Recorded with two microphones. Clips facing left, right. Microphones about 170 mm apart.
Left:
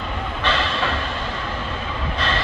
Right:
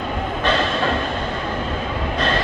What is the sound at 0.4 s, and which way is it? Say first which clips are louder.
Music: right 3 dB; 45° right (ahead or behind).